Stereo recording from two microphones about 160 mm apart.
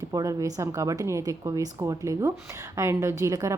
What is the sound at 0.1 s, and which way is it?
A woman's voice, 20° right (ahead or behind).